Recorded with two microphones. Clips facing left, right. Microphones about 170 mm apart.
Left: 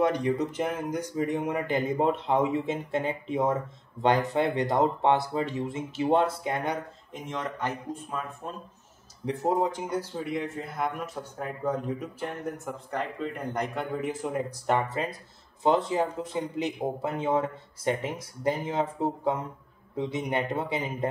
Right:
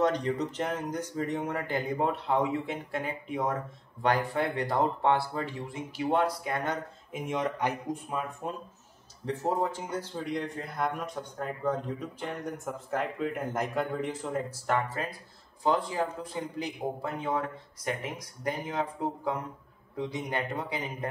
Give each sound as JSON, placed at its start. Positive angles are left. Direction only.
{"t": 0.0, "sound": "speech", "side_deg": 10}
{"t": 7.1, "sound": "speech", "side_deg": -10}
{"t": 9.2, "sound": "speech", "side_deg": 15}
{"t": 14.0, "sound": "speech", "side_deg": 10}
{"t": 15.6, "sound": "speech", "side_deg": 25}